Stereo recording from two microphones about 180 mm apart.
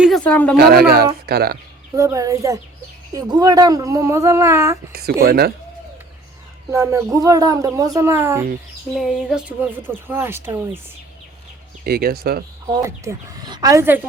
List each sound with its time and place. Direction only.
0.0 s a woman's voice: 5° left (ahead or behind)
0.5 s speech: 60° right (ahead or behind)
2.0 s speech: 20° right (ahead or behind)
4.9 s speech: 60° right (ahead or behind)
6.7 s speech: 15° right (ahead or behind)
9.0 s speech: 5° right (ahead or behind)
11.9 s speech: 55° right (ahead or behind)
12.6 s speech: 20° right (ahead or behind)